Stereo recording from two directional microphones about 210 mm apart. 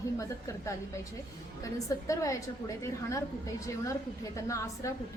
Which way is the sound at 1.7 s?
15° left (ahead or behind).